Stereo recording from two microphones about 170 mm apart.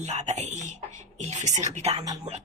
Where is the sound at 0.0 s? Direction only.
40° right (ahead or behind).